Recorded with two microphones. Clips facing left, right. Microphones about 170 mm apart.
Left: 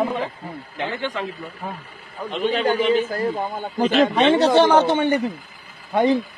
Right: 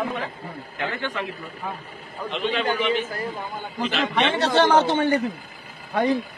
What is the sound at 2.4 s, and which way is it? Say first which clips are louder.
A man's voice: left 4 dB; 40° left (ahead or behind).